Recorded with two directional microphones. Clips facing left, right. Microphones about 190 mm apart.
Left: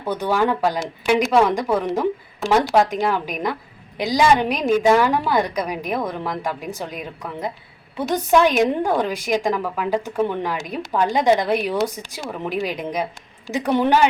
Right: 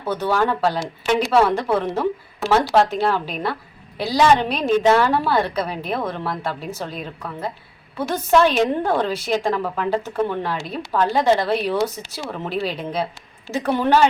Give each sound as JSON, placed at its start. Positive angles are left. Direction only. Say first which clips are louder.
{"t": 0.0, "sound": "a woman's voice", "louder": "even", "side_deg": 15}